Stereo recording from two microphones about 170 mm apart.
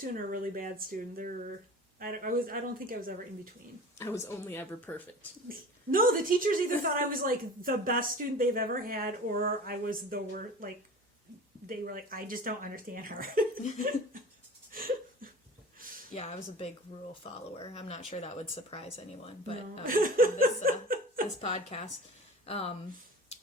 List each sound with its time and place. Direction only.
0.1 s a woman's voice: 55° right (ahead or behind)
3.9 s speech: 15° left (ahead or behind)
5.5 s a woman's voice: 55° right (ahead or behind)
14.7 s a sound: 60° right (ahead or behind)
16.1 s speech: 40° left (ahead or behind)
19.8 s a woman's voice: 55° right (ahead or behind)
20.4 s chuckle: 60° right (ahead or behind)
21.4 s speech: 40° left (ahead or behind)